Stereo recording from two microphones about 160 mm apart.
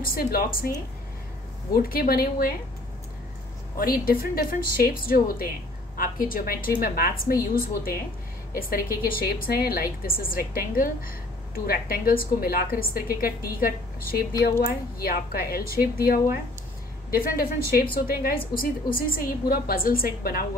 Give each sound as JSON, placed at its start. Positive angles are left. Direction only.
{"t": 0.0, "sound": "a woman's voice", "side_deg": 65}
{"t": 1.7, "sound": "a woman's voice", "side_deg": 65}
{"t": 3.7, "sound": "a woman's voice", "side_deg": 65}